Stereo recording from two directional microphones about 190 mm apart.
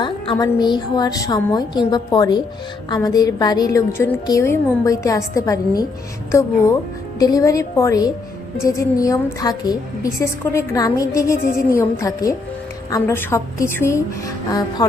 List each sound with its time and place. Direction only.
0.0 s a woman's voice: 20° left (ahead or behind)
7.2 s a woman's voice: 20° left (ahead or behind)